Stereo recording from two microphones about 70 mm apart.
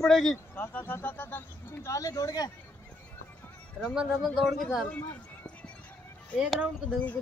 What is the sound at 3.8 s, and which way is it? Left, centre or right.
A man's voice, centre.